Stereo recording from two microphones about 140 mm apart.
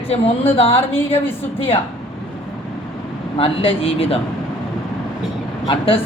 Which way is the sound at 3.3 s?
40° left (ahead or behind).